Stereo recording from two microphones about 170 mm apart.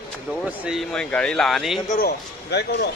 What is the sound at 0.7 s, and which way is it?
Speech, centre (ahead or behind).